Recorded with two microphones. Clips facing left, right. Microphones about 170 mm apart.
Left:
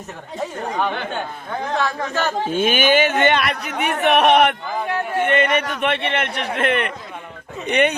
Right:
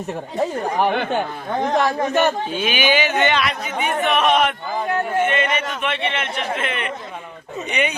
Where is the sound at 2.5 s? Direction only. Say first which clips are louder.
Left 3 dB; 50° left (ahead or behind).